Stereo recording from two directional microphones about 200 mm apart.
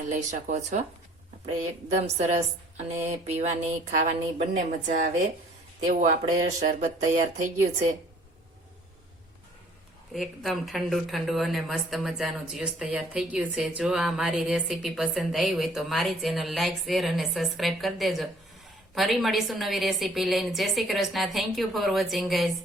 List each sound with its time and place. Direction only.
0.1 s speech: 40° right (ahead or behind)
1.9 s speech: 35° right (ahead or behind)
10.1 s speech: centre (ahead or behind)